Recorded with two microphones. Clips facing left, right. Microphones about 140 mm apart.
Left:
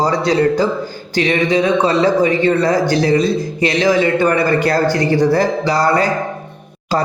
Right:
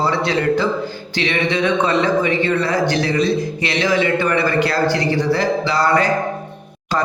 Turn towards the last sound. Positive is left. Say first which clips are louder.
# left 2 dB
turn(degrees=35)  # may be behind; listen again after turning